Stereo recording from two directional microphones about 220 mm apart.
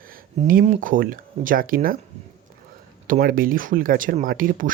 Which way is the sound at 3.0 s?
40° right (ahead or behind).